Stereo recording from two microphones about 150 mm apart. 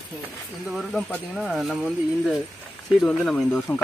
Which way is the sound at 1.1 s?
Centre (ahead or behind).